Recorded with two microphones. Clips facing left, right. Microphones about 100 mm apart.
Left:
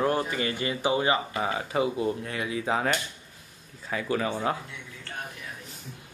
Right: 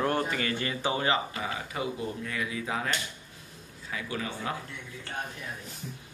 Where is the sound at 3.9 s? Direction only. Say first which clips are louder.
Left 7 dB; 35° left (ahead or behind).